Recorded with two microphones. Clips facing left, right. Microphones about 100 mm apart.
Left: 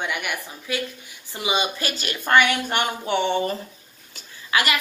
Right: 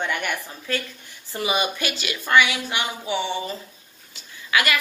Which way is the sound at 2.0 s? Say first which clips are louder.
Left 1 dB; 45° left (ahead or behind).